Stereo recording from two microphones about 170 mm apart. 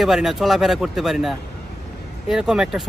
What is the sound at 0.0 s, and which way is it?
Speech, centre (ahead or behind).